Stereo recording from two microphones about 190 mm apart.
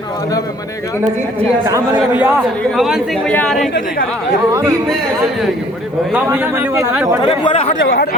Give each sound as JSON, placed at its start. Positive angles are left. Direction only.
{"t": 2.0, "sound": "speech", "side_deg": -10}
{"t": 6.1, "sound": "speech", "side_deg": -10}
{"t": 7.2, "sound": "speech", "side_deg": 25}
{"t": 7.8, "sound": "speech", "side_deg": 60}